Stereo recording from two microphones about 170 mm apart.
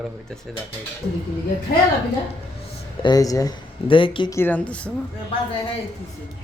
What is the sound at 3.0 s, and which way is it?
Speech, 20° left (ahead or behind).